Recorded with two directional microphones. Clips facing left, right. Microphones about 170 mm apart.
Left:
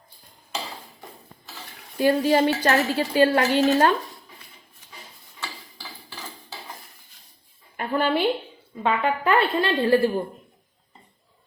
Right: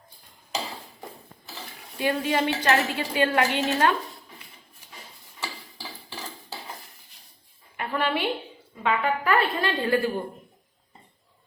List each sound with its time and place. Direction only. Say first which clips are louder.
2.0 s a woman's voice: left 6 dB; 40° left (ahead or behind)
7.8 s a woman's voice: left 4 dB; 35° left (ahead or behind)